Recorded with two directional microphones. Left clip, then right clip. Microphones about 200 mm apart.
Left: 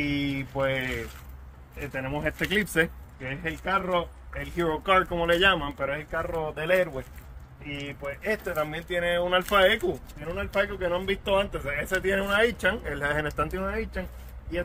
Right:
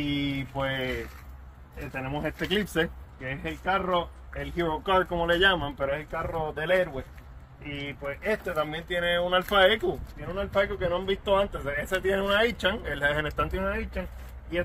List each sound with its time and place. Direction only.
0.3 s a sound: 10° left (ahead or behind)
2.0 s speech: 20° left (ahead or behind)
3.3 s speech: 15° left (ahead or behind)
13.6 s speech: 10° left (ahead or behind)